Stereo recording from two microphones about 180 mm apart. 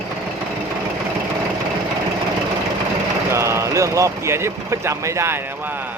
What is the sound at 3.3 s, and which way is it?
Speech, 15° right (ahead or behind).